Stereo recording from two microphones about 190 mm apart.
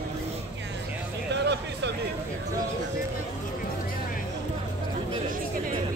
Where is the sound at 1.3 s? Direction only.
65° right (ahead or behind).